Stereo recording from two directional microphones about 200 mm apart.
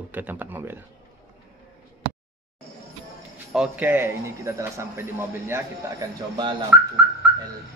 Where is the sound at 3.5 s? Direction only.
5° right (ahead or behind).